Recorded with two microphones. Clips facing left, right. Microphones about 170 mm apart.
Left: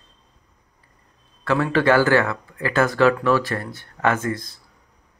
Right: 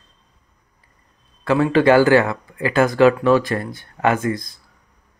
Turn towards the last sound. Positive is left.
turn(degrees=-15)  # may be behind; listen again after turning